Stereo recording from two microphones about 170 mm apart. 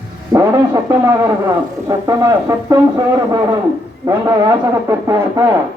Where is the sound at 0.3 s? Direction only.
20° right (ahead or behind).